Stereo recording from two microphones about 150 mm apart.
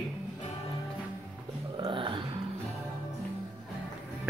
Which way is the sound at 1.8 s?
35° right (ahead or behind).